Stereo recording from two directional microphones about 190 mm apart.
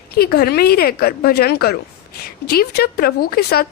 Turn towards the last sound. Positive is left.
turn(degrees=55)  # may be behind; listen again after turning